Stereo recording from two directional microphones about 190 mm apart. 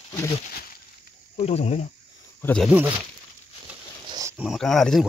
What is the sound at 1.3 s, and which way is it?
Speech, 35° left (ahead or behind).